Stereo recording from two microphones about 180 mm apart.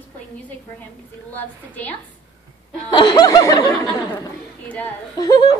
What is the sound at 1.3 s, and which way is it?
Speech, 10° left (ahead or behind).